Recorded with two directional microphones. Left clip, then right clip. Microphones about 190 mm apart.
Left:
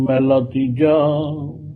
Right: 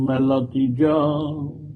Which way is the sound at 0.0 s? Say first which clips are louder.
Left 5 dB; 15° right (ahead or behind).